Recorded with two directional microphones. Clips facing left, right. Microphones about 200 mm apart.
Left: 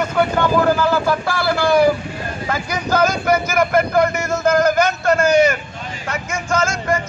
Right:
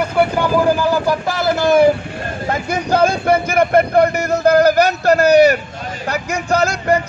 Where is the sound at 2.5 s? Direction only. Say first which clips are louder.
Right 3 dB; 30° right (ahead or behind).